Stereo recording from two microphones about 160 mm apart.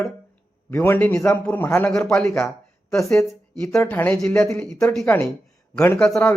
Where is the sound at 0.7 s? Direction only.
10° left (ahead or behind).